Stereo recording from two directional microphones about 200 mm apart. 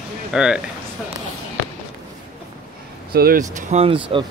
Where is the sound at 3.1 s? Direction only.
50° right (ahead or behind).